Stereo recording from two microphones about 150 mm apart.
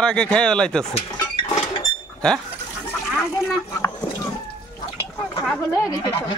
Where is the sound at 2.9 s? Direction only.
20° left (ahead or behind).